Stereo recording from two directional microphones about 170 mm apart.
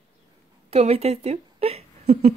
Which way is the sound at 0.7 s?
35° right (ahead or behind).